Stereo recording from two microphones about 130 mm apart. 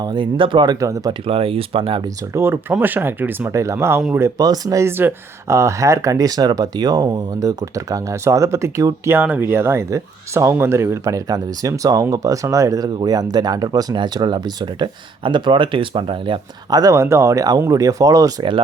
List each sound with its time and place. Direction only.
0.0 s speech: 35° right (ahead or behind)
0.8 s speech: 25° right (ahead or behind)
1.3 s speech: 45° right (ahead or behind)
2.3 s speech: 15° right (ahead or behind)